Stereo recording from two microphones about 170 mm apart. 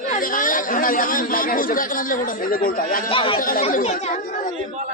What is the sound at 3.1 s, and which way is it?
Speech, 30° left (ahead or behind).